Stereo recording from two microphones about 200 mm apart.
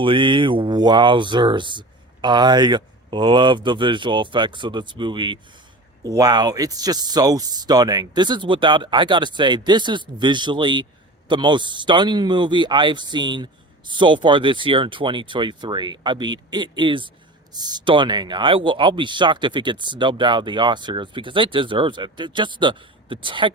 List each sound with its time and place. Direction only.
0.0 s speech: 25° right (ahead or behind)